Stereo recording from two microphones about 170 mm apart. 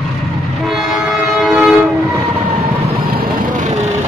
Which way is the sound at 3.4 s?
45° right (ahead or behind).